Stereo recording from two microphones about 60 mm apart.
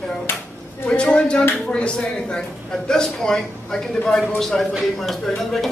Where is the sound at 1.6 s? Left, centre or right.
Centre.